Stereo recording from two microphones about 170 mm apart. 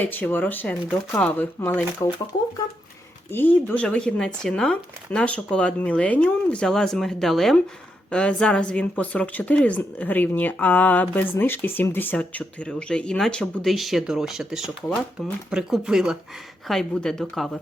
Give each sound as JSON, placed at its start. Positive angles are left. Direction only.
{"t": 0.0, "sound": "a woman's voice", "side_deg": 10}
{"t": 2.0, "sound": "speech", "side_deg": 20}
{"t": 3.3, "sound": "a woman's voice", "side_deg": 10}